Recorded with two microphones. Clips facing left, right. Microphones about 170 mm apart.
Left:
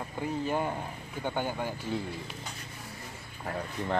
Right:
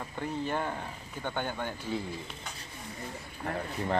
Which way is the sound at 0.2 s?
10° left (ahead or behind).